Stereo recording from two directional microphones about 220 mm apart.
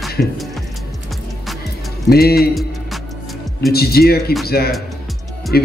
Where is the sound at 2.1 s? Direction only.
45° left (ahead or behind).